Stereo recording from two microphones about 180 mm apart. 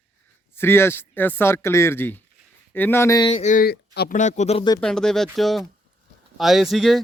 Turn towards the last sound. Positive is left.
turn(degrees=0)  # may be behind; listen again after turning